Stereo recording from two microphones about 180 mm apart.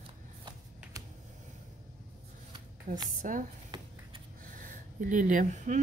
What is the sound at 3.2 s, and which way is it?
Speech, 50° right (ahead or behind).